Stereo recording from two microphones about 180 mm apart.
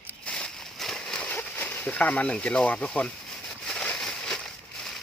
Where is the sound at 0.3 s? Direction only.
5° left (ahead or behind).